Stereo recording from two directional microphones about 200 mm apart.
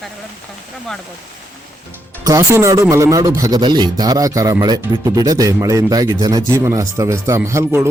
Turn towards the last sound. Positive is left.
turn(degrees=-15)  # may be behind; listen again after turning